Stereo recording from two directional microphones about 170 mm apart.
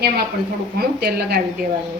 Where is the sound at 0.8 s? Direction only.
65° right (ahead or behind).